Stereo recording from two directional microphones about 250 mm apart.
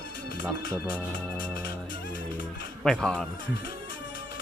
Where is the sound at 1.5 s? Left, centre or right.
Left.